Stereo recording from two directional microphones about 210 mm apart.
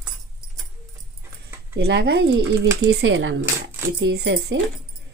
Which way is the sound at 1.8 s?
55° right (ahead or behind).